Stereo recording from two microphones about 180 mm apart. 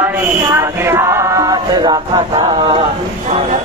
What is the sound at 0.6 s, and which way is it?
Choir, 15° right (ahead or behind).